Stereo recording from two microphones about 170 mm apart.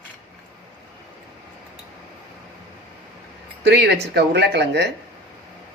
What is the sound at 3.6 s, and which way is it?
Speech, 80° right.